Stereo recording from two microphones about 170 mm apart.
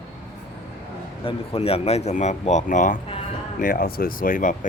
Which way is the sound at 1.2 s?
35° left (ahead or behind).